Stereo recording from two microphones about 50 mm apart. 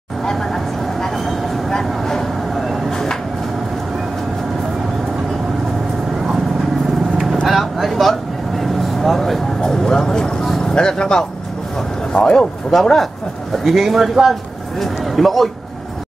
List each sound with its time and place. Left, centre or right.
0.2 s vehicle: centre
2.9 s a sound: centre
7.4 s vehicle: centre
10.7 s music: centre
12.1 s speech: centre